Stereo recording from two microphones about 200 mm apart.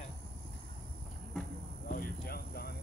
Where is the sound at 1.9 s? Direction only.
50° left (ahead or behind).